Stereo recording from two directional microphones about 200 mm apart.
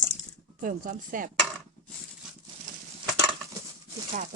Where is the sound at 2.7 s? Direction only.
40° right (ahead or behind).